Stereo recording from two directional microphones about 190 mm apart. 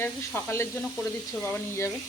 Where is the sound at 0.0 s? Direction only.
10° left (ahead or behind).